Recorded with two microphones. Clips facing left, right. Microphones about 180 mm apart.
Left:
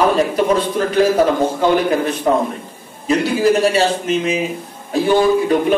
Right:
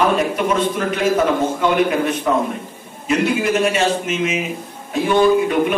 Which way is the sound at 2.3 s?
35° left (ahead or behind).